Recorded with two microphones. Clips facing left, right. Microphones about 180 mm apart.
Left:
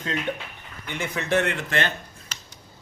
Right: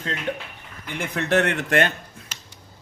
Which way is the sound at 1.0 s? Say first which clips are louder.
Right 2 dB; 60° right (ahead or behind).